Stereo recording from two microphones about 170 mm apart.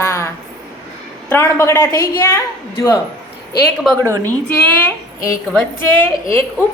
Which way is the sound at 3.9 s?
20° right (ahead or behind).